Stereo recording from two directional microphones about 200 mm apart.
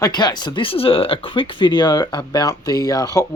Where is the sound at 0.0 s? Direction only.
20° left (ahead or behind).